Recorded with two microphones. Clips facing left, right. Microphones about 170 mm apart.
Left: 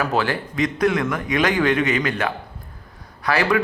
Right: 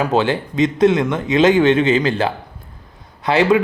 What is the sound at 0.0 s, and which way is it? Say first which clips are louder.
Speech: right 5 dB; 20° right (ahead or behind).